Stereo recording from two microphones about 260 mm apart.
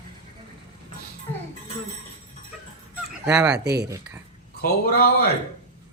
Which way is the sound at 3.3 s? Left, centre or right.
Centre.